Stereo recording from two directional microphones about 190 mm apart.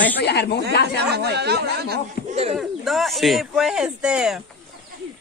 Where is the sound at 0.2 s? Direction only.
60° left (ahead or behind).